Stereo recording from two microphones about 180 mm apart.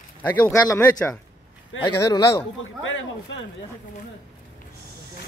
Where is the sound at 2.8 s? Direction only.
90° left.